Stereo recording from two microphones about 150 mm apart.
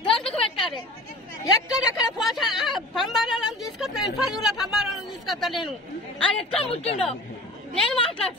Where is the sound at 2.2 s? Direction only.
Centre (ahead or behind).